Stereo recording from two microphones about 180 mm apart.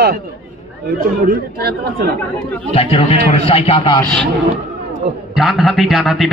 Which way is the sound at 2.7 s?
30° left (ahead or behind).